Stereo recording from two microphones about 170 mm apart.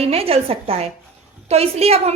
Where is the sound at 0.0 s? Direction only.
35° right (ahead or behind).